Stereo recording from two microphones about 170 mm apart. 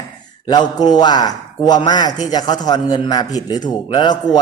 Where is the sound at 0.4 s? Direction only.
25° left (ahead or behind).